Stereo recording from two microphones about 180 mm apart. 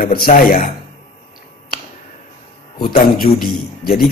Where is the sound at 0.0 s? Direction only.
55° left (ahead or behind).